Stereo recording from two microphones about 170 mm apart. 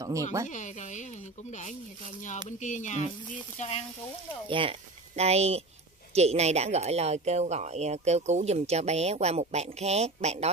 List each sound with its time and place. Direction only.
0.0 s speech: 20° right (ahead or behind)
0.5 s speech: 45° left (ahead or behind)
3.5 s frying: 40° left (ahead or behind)
4.5 s speech: 30° right (ahead or behind)